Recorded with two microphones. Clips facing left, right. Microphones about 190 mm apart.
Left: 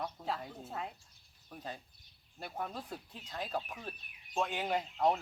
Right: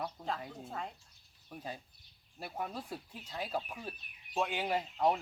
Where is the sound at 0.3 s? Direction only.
Centre (ahead or behind).